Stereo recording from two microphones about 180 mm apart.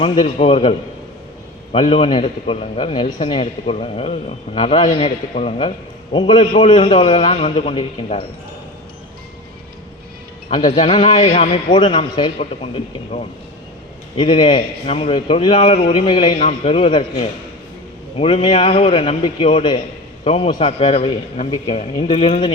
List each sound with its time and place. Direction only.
0.0 s a man's voice: 35° left (ahead or behind)
10.5 s a man's voice: 35° left (ahead or behind)